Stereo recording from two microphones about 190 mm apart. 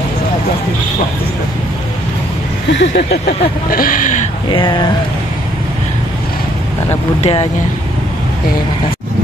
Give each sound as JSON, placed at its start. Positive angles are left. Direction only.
{"t": 2.7, "sound": "a sound", "side_deg": 70}
{"t": 3.3, "sound": "speech", "side_deg": 50}
{"t": 4.5, "sound": "speech", "side_deg": 25}
{"t": 7.2, "sound": "speech", "side_deg": 30}